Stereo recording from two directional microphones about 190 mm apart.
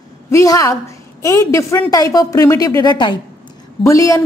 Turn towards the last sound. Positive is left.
turn(degrees=15)  # may be behind; listen again after turning